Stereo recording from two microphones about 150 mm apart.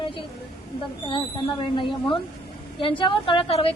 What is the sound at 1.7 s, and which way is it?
A woman's voice, 35° left (ahead or behind).